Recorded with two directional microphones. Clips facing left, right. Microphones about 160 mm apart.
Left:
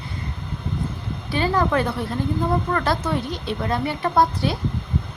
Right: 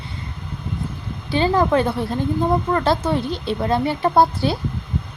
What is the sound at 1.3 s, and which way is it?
A woman's voice, 25° right (ahead or behind).